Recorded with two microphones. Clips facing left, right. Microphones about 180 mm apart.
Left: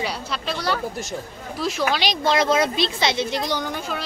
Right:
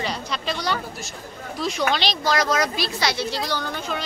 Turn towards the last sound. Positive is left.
turn(degrees=15)  # may be behind; listen again after turning